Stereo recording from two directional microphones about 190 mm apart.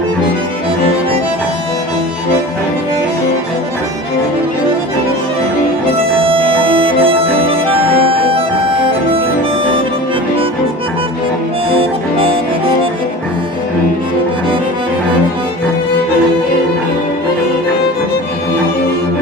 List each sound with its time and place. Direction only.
6.2 s music: 30° right (ahead or behind)
11.8 s harmonica: 30° right (ahead or behind)